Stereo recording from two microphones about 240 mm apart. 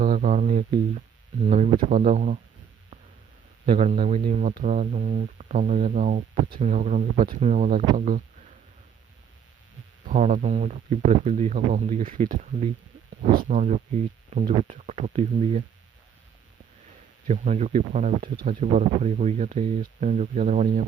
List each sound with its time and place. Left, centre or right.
0.0 s speech: right
3.7 s speech: right
10.1 s speech: right
17.2 s speech: right